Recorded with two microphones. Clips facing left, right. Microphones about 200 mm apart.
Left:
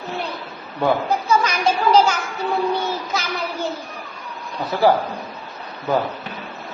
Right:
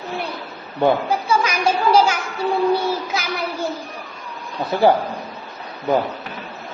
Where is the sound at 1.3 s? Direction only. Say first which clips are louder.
Even; 10° right (ahead or behind).